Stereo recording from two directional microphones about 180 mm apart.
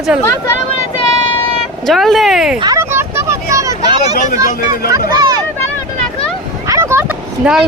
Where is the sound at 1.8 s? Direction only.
Centre (ahead or behind).